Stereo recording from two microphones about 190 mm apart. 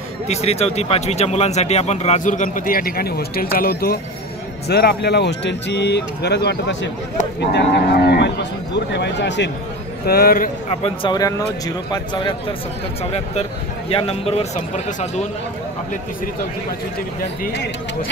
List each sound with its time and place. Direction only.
0.3 s speech: 35° left (ahead or behind); by 9.5 s 65° left (ahead or behind)
10.0 s a man's voice: 55° left (ahead or behind)
10.7 s speech: 30° left (ahead or behind)
17.5 s speech: 70° left (ahead or behind)